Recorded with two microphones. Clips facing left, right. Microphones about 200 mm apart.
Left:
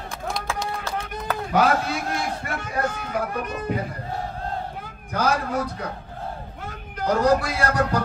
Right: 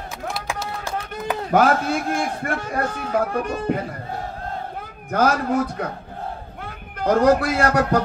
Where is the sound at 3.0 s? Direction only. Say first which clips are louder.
Right 5 dB; 30° right (ahead or behind).